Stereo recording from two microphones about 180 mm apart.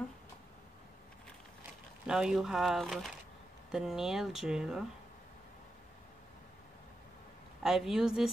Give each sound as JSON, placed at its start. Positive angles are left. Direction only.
{"t": 2.0, "sound": "speech", "side_deg": -5}
{"t": 7.6, "sound": "speech", "side_deg": 0}